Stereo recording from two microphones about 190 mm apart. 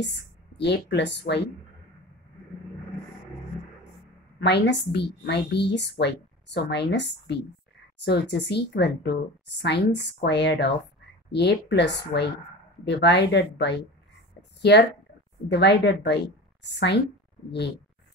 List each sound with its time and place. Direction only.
0.6 s a woman's voice: 65° left (ahead or behind)
4.4 s a woman's voice: 65° left (ahead or behind)